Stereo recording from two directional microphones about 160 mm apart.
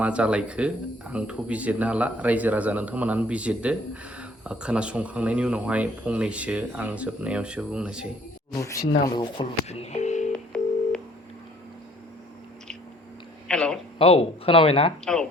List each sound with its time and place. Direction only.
0.0 s speech: 5° right (ahead or behind)
8.8 s speech: 25° left (ahead or behind); by 10.2 s 45° left (ahead or behind)
10.3 s telephone dialing: 5° left (ahead or behind)
13.5 s a sound: 5° left (ahead or behind)
14.0 s speech: 35° left (ahead or behind)
15.0 s speech: 5° left (ahead or behind)